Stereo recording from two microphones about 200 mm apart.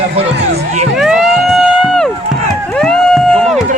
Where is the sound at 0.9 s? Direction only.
Centre (ahead or behind).